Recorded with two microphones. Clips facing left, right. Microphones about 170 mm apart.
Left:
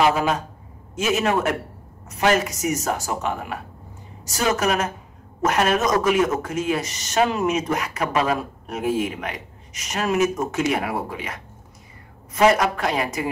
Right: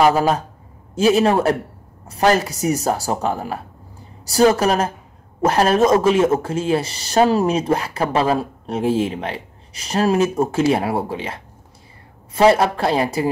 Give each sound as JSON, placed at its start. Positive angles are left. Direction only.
{"t": 0.0, "sound": "speech", "side_deg": -40}